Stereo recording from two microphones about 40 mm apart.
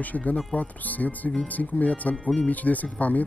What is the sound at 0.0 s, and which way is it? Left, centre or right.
Speech, left.